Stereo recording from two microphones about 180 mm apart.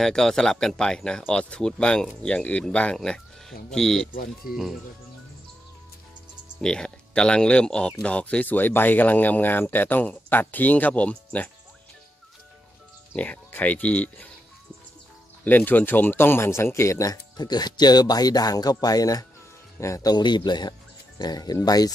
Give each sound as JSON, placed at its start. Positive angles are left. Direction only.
{"t": 0.0, "sound": "speech", "side_deg": 5}
{"t": 4.1, "sound": "speech", "side_deg": 50}
{"t": 6.6, "sound": "speech", "side_deg": 5}
{"t": 13.1, "sound": "speech", "side_deg": 10}
{"t": 15.4, "sound": "speech", "side_deg": 10}